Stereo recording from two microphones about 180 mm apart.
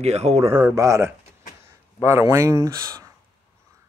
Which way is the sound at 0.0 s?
35° right (ahead or behind).